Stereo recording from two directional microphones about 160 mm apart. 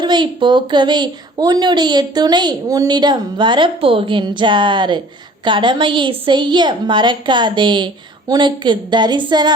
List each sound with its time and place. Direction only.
0.0 s a woman's voice: 30° right (ahead or behind)